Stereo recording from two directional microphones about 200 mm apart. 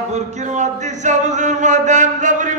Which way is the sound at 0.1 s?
35° right (ahead or behind).